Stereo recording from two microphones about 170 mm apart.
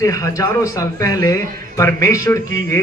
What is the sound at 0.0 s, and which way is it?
A man's voice, 20° left (ahead or behind).